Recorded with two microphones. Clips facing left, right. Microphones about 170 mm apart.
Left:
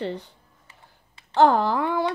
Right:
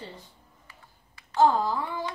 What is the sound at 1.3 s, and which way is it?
Speech, 70° left (ahead or behind).